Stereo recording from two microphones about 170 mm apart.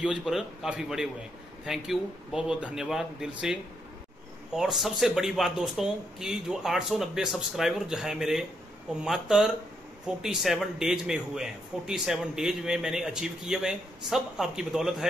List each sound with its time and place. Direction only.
0.0 s speech: 5° right (ahead or behind)